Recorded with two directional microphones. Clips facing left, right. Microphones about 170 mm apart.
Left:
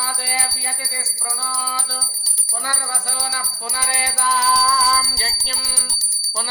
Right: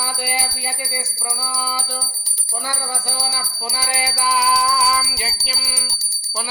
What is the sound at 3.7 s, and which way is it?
Music, 10° right (ahead or behind).